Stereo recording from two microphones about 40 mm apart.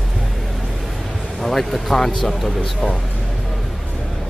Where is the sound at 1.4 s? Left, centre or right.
Centre.